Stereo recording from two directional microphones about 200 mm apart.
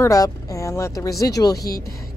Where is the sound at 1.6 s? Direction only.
50° left (ahead or behind).